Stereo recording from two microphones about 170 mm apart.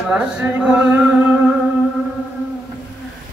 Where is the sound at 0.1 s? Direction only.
5° right (ahead or behind).